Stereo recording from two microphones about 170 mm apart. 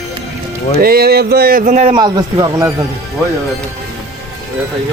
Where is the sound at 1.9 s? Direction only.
25° right (ahead or behind).